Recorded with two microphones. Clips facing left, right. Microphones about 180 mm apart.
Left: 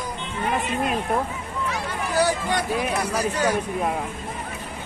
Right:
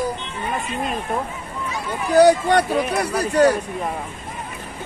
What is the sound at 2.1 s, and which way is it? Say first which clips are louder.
Speech: right 9 dB; 65° right (ahead or behind).